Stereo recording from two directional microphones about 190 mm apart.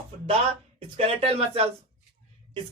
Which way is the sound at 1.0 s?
30° right (ahead or behind).